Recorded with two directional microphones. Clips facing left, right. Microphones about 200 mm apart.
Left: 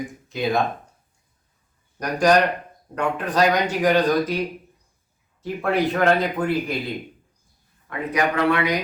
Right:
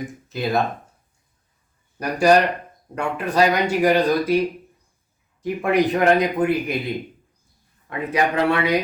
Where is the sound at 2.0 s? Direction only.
10° right (ahead or behind).